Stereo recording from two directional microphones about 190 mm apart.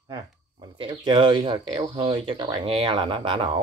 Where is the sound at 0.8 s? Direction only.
25° right (ahead or behind).